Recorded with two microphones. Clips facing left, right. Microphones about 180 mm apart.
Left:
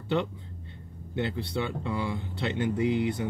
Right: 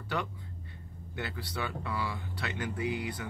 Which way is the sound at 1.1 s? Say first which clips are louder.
Left 8 dB; 25° left (ahead or behind).